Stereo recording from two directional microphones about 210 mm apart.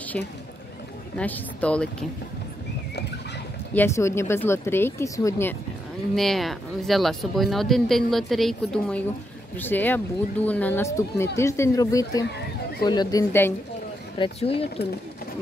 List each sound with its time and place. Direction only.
1.1 s speech: 5° left (ahead or behind)
3.7 s speech: 10° left (ahead or behind)
6.1 s speech: centre (ahead or behind)
14.1 s speech: 25° left (ahead or behind)